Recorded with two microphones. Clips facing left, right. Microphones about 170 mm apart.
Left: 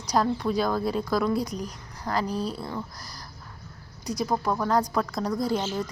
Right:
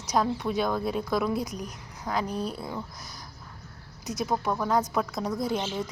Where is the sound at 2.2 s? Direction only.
30° left (ahead or behind).